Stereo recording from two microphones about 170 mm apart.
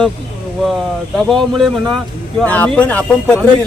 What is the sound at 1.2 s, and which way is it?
Speech, centre (ahead or behind).